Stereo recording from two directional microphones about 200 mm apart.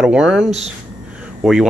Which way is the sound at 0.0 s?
5° right (ahead or behind).